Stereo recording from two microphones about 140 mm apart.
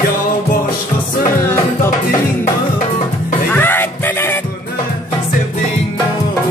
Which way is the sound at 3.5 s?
15° left (ahead or behind).